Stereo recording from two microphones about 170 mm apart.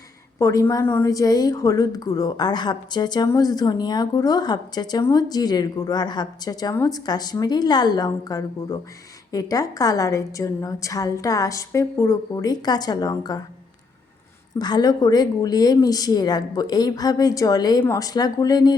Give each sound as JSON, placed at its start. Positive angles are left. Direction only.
{"t": 0.3, "sound": "a woman's voice", "side_deg": 15}
{"t": 14.6, "sound": "a woman's voice", "side_deg": 25}